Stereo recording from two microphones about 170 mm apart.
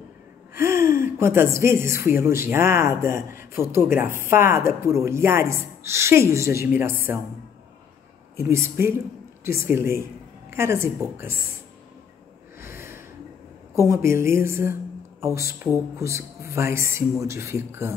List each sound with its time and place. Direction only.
0.6 s speech: 15° right (ahead or behind)
8.4 s speech: 15° right (ahead or behind)
12.5 s snort: 15° right (ahead or behind)
13.8 s speech: 15° right (ahead or behind)